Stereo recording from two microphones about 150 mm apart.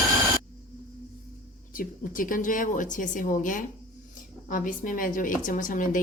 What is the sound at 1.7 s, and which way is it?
A woman's voice, 65° left (ahead or behind).